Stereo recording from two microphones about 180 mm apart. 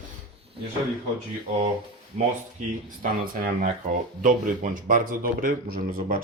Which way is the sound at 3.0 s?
50° right (ahead or behind).